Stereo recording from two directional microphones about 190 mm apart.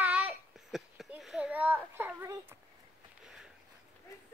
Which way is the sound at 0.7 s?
Centre (ahead or behind).